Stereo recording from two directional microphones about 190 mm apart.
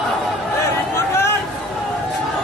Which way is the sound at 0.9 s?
15° left (ahead or behind).